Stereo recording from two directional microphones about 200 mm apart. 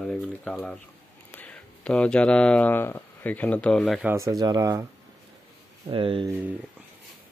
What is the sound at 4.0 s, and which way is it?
Speech, 10° right (ahead or behind).